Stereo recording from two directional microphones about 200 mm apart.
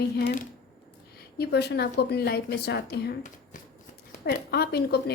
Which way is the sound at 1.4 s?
55° left (ahead or behind).